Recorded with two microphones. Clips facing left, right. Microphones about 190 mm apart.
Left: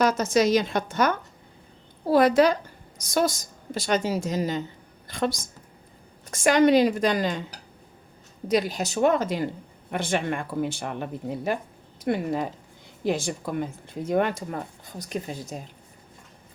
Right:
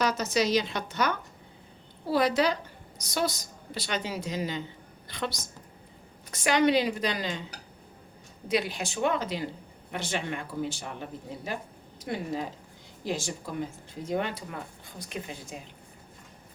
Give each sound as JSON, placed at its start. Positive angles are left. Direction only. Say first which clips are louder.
{"t": 0.0, "sound": "a woman's voice", "louder": "left 6 dB", "side_deg": 50}
{"t": 8.4, "sound": "a woman's voice", "louder": "left 5 dB", "side_deg": 40}